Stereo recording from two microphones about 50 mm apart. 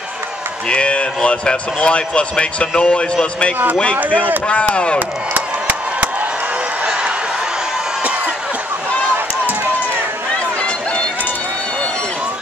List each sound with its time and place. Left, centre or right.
0.7 s a man's voice: left
4.0 s speech: right
4.5 s a man's voice: left
5.3 s chop: right